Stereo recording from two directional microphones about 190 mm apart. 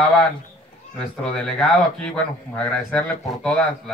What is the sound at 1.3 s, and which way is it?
Speech, 5° left (ahead or behind).